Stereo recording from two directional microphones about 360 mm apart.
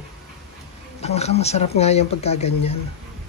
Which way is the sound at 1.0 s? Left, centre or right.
Centre.